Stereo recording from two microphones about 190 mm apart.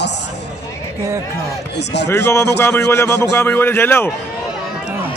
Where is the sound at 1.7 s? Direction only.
65° left (ahead or behind).